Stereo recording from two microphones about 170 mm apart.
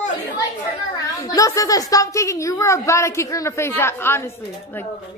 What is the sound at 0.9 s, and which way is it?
A woman's voice, 20° left (ahead or behind).